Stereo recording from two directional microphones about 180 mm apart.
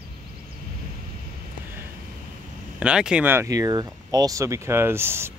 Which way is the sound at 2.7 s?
5° right (ahead or behind).